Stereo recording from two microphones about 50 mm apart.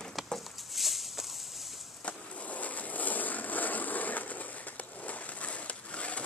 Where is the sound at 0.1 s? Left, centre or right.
Centre.